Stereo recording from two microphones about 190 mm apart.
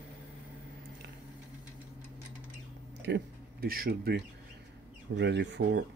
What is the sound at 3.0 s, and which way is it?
Speech, 55° right (ahead or behind).